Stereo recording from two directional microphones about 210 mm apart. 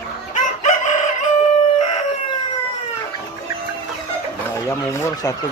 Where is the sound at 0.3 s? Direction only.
35° left (ahead or behind).